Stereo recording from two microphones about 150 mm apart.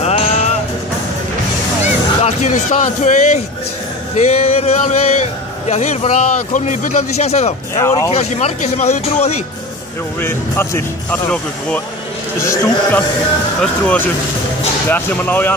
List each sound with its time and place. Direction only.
0.0 s music: 45° left (ahead or behind)
2.2 s a man's voice: 50° left (ahead or behind)
7.7 s speech: 20° left (ahead or behind)
8.1 s a man's voice: 50° left (ahead or behind)
10.2 s speech: 15° left (ahead or behind)